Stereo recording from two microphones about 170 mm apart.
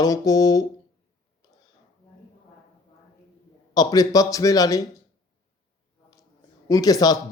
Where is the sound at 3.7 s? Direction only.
25° left (ahead or behind).